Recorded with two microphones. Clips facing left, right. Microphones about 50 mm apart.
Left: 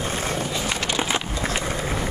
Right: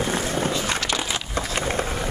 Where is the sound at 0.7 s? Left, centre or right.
Left.